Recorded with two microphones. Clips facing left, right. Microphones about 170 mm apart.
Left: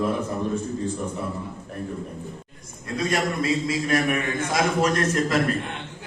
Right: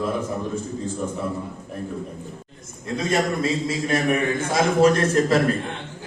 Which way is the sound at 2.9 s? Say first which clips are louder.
Right 2 dB; 25° right (ahead or behind).